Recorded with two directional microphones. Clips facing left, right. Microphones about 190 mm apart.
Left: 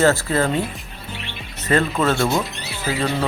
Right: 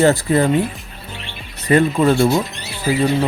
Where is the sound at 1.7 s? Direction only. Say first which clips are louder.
Right 5 dB; 15° right (ahead or behind).